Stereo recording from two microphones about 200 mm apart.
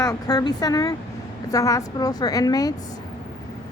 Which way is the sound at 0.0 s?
15° left (ahead or behind).